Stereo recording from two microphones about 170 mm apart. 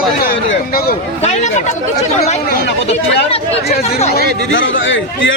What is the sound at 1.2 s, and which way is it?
Speech, 40° left (ahead or behind).